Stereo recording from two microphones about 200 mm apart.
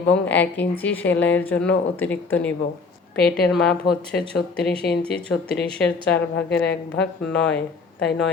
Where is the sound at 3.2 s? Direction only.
50° left (ahead or behind).